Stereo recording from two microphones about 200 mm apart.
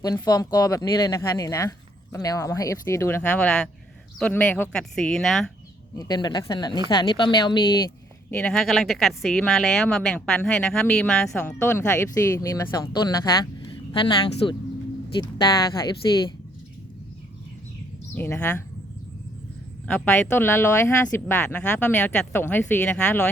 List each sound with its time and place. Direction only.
0.0 s a woman's voice: 20° left (ahead or behind); by 5.5 s centre (ahead or behind)
6.0 s speech: 20° left (ahead or behind)
8.4 s a woman's voice: 5° left (ahead or behind); by 14.5 s 25° left (ahead or behind)
16.0 s speech: 20° left (ahead or behind)
18.1 s speech: 10° left (ahead or behind)
19.9 s speech: 10° left (ahead or behind)